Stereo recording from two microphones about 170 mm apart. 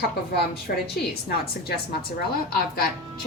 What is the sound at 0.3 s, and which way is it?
A woman's voice, 70° left (ahead or behind).